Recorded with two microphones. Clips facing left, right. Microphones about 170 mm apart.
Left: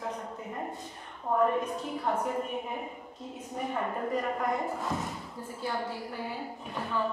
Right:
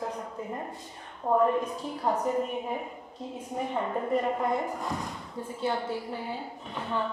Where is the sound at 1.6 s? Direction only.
35° right (ahead or behind).